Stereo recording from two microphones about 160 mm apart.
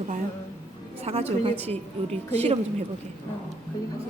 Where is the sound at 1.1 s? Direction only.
40° right (ahead or behind).